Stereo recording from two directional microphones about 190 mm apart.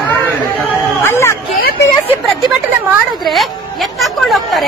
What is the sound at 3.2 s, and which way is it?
A woman's voice, centre (ahead or behind).